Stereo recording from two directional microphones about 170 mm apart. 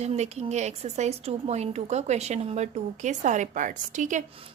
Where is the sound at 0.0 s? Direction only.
40° right (ahead or behind).